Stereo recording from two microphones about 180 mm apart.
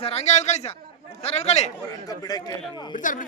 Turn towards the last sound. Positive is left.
turn(degrees=45)  # may be behind; listen again after turning